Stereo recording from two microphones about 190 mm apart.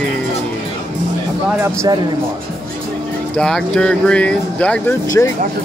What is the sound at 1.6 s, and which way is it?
Speech, 15° right (ahead or behind).